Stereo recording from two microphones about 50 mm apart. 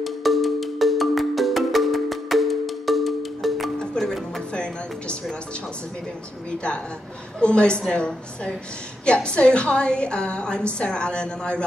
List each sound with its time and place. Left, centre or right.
0.0 s music: centre
7.3 s a woman's voice: left